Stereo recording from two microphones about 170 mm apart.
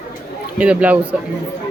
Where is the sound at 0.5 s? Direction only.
10° right (ahead or behind).